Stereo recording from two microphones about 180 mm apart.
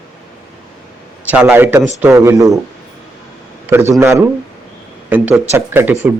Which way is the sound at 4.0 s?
15° right (ahead or behind).